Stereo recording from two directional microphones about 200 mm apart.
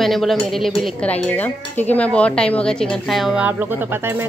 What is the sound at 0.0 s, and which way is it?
Speech, centre (ahead or behind).